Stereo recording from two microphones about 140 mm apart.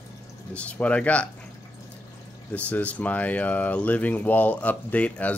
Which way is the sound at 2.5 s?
10° left (ahead or behind).